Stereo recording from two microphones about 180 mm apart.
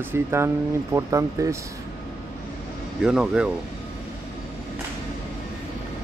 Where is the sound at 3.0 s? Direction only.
5° right (ahead or behind).